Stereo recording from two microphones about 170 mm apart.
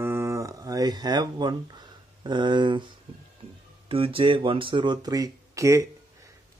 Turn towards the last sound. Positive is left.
turn(degrees=-20)  # may be behind; listen again after turning